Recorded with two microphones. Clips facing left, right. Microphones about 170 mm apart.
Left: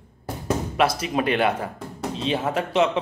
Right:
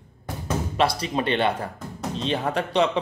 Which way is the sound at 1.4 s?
5° left (ahead or behind).